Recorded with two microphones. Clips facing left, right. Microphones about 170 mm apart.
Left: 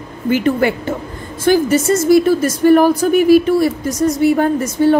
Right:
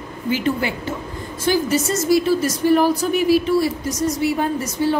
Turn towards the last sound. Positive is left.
turn(degrees=55)  # may be behind; listen again after turning